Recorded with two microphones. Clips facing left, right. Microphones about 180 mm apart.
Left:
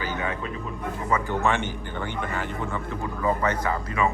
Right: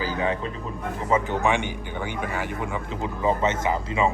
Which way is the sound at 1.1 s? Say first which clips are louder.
Right 2 dB; 15° right (ahead or behind).